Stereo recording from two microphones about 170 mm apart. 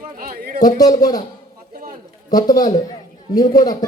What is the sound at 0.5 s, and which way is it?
Speech, 20° left (ahead or behind).